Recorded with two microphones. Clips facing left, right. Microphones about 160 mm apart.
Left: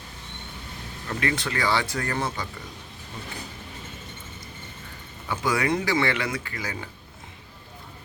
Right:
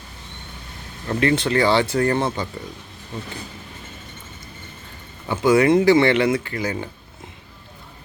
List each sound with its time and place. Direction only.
1.0 s speech: 30° right (ahead or behind)
5.3 s speech: 25° right (ahead or behind)